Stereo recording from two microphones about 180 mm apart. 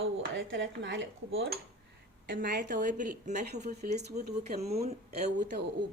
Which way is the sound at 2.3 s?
55° right (ahead or behind).